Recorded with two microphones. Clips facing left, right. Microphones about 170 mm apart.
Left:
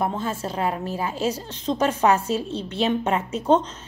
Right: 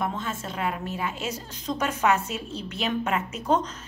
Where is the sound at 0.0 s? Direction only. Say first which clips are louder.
Left 4 dB; 30° left (ahead or behind).